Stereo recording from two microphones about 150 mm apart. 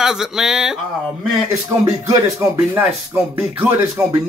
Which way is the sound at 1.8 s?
20° right (ahead or behind).